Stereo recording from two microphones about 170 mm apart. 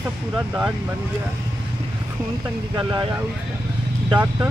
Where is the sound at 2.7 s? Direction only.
25° right (ahead or behind).